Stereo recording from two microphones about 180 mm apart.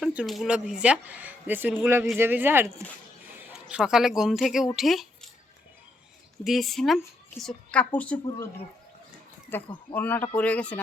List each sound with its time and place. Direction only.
0.0 s speech: 5° right (ahead or behind)
6.4 s a woman's voice: centre (ahead or behind)
9.9 s a woman's voice: 10° left (ahead or behind)